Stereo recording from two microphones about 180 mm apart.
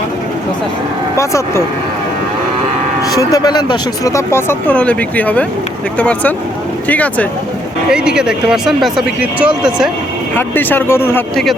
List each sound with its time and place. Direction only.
1.1 s speech: 15° left (ahead or behind)
3.0 s speech: 20° left (ahead or behind)
7.9 s speech: 5° right (ahead or behind)
10.3 s speech: 10° left (ahead or behind)